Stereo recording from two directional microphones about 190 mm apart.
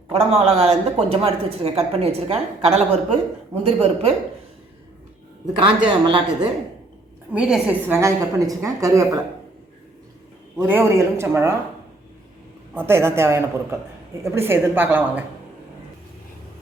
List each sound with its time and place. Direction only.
0.1 s a woman's voice: 35° right (ahead or behind)
5.5 s speech: 25° right (ahead or behind)
7.3 s a woman's voice: 5° right (ahead or behind)
10.6 s a woman's voice: 10° right (ahead or behind)
12.7 s a woman's voice: 15° right (ahead or behind)